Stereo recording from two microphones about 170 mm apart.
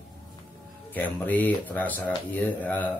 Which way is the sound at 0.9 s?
10° left (ahead or behind).